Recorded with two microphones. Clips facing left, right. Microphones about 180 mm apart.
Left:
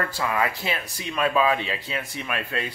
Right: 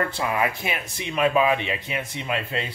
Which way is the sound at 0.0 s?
20° right (ahead or behind).